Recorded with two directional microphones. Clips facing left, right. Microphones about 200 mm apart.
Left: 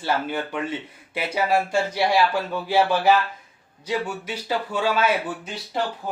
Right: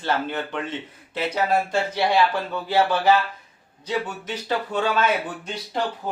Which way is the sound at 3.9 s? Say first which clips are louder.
Even; 10° left (ahead or behind).